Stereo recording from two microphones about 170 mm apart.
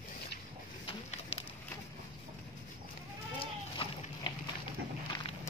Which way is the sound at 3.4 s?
30° left (ahead or behind).